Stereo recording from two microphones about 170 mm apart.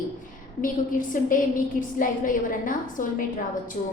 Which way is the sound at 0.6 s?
50° left (ahead or behind).